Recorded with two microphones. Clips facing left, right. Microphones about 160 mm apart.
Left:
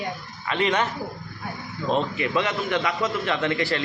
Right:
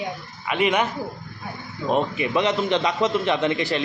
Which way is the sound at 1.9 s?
15° right (ahead or behind).